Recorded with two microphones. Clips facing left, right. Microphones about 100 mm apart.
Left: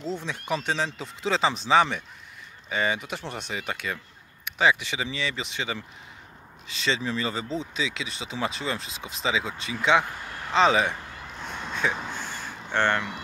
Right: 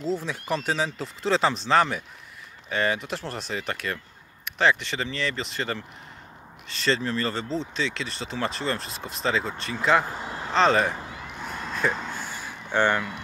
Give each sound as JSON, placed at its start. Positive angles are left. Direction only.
{"t": 0.0, "sound": "speech", "side_deg": 0}
{"t": 10.0, "sound": "vehicle", "side_deg": -30}
{"t": 10.5, "sound": "speech", "side_deg": 0}
{"t": 11.1, "sound": "a sound", "side_deg": -10}